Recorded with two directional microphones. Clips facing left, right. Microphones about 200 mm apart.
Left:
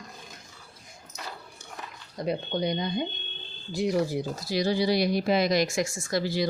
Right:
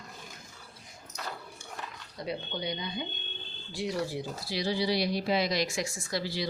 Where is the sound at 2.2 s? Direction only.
45° left (ahead or behind).